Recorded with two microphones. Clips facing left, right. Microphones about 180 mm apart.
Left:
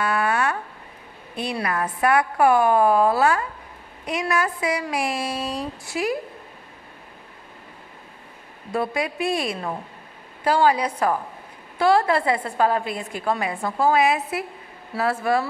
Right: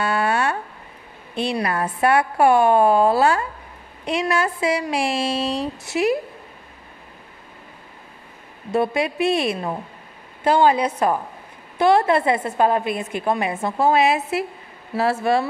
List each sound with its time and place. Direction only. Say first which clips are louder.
0.0 s a sound: right 2 dB; 30° right (ahead or behind)
1.3 s a woman's voice: right 3 dB; 30° right (ahead or behind)
8.7 s a woman's voice: right 4 dB; 25° right (ahead or behind)